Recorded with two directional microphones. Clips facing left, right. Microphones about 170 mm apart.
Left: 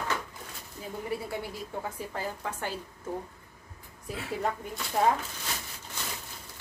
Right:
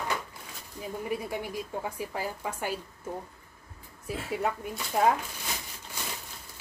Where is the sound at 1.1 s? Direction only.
15° right (ahead or behind).